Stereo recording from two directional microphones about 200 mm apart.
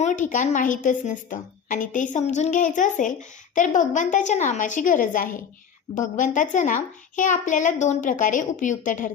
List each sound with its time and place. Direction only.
0.0 s a woman's voice: 40° left (ahead or behind)